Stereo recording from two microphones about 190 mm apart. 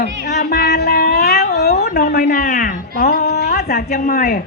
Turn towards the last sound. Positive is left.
turn(degrees=50)  # may be behind; listen again after turning